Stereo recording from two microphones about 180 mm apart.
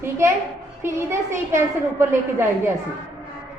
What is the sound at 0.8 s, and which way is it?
A woman's voice, 15° right (ahead or behind).